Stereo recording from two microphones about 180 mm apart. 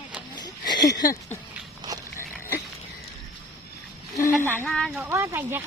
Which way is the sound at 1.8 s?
20° right (ahead or behind).